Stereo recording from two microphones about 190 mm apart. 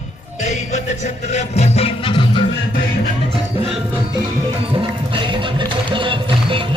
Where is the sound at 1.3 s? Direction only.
35° left (ahead or behind).